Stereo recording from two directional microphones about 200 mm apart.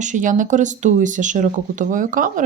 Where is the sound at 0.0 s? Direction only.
40° right (ahead or behind).